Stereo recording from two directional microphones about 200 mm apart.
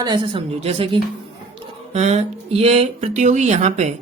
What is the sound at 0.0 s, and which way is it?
Speech, 20° right (ahead or behind).